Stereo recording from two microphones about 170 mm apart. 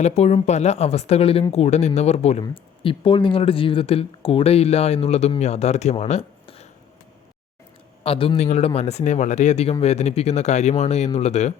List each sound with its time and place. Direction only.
0.0 s speech: 40° left (ahead or behind)
8.0 s speech: 35° left (ahead or behind)